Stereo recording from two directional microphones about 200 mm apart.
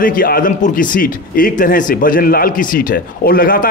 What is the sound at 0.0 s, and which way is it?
A man's voice, 45° left (ahead or behind).